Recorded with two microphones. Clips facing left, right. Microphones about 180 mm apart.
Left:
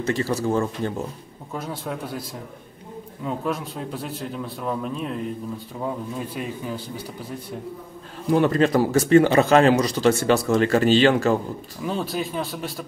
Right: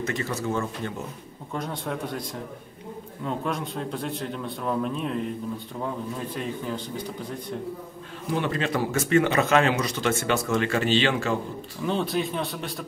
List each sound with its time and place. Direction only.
0.0 s speech: 35° left (ahead or behind)
1.5 s a man's voice: 5° left (ahead or behind)
3.3 s a man's voice: 5° left (ahead or behind)
6.3 s a man's voice: 10° left (ahead or behind)
8.3 s speech: 40° left (ahead or behind)
11.8 s a man's voice: 5° left (ahead or behind)